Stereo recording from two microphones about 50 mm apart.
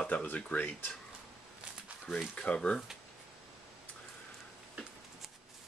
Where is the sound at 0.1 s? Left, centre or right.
Left.